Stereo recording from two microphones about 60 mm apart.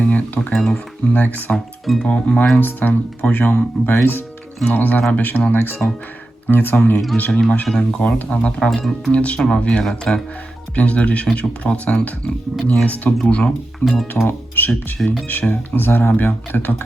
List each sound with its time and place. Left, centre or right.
0.0 s a sound: left
0.5 s speech: centre
1.1 s speech: left
1.5 s speech: centre
2.0 s speech: left
2.6 s speech: left
4.6 s speech: left
7.2 s speech: left
8.2 s speech: left
13.8 s speech: centre
14.3 s speech: left
14.9 s speech: centre
15.3 s speech: left